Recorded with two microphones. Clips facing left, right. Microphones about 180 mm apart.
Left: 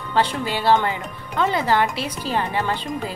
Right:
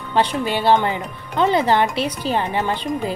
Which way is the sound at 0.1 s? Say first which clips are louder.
Right 2 dB; 20° right (ahead or behind).